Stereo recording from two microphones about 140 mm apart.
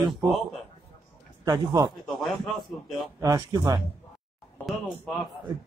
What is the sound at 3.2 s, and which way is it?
Speech, 25° right (ahead or behind).